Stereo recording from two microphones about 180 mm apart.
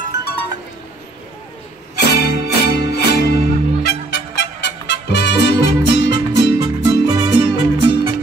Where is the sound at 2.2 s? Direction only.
65° left (ahead or behind).